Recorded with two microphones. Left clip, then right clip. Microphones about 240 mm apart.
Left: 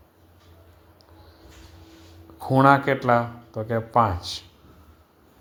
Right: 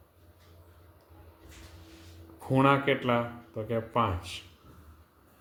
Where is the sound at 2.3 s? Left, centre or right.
Left.